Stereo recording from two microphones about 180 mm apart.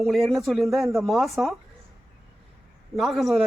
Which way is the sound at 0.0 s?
Centre (ahead or behind).